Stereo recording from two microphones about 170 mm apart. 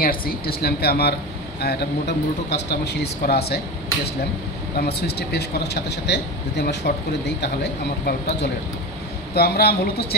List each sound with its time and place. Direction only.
0.0 s speech: 60° left (ahead or behind)
4.7 s speech: 75° left (ahead or behind)
8.0 s speech: 75° left (ahead or behind)